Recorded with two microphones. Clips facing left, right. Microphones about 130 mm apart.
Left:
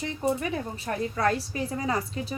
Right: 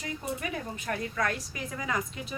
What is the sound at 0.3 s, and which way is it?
A woman's voice, 30° left (ahead or behind).